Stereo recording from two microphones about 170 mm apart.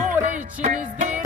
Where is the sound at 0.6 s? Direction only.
45° right (ahead or behind).